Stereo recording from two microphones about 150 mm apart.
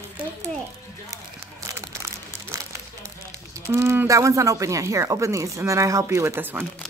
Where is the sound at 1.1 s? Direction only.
20° right (ahead or behind).